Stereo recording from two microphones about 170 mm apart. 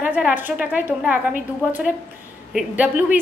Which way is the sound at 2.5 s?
5° right (ahead or behind).